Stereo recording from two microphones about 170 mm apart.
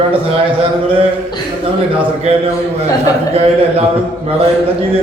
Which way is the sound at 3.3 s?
35° right (ahead or behind).